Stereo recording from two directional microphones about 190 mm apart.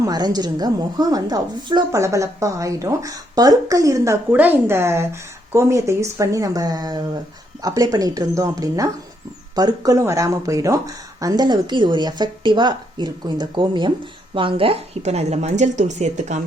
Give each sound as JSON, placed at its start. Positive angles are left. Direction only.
{"t": 0.0, "sound": "a woman's voice", "side_deg": -20}